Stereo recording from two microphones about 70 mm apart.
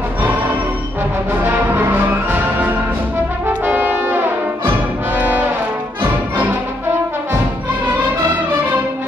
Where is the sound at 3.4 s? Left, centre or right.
Right.